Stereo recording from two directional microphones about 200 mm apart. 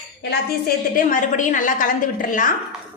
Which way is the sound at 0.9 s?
40° left (ahead or behind).